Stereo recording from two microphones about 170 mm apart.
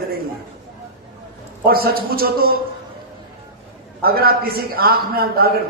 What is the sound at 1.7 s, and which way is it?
Speech, 60° right (ahead or behind).